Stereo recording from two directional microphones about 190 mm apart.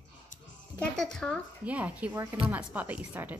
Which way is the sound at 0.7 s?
5° left (ahead or behind).